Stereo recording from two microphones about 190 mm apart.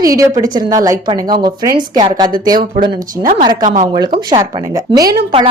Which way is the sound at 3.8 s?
25° right (ahead or behind).